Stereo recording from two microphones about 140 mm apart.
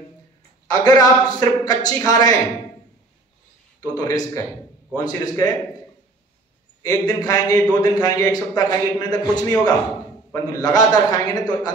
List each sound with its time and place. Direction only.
0.7 s a man's voice: 30° left (ahead or behind)
3.8 s a man's voice: 30° left (ahead or behind)
6.8 s a man's voice: 25° left (ahead or behind)